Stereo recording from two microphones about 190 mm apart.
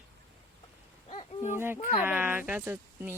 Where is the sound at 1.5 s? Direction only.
10° right (ahead or behind).